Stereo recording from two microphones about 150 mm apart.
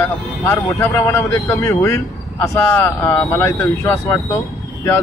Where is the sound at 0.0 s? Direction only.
15° left (ahead or behind).